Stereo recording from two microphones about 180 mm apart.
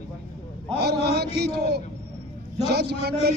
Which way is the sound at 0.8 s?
65° right (ahead or behind).